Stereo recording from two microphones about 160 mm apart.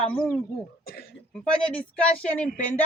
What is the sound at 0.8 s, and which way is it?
Cough, 70° left (ahead or behind).